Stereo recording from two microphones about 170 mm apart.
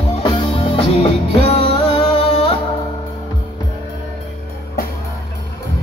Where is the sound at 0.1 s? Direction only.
30° left (ahead or behind).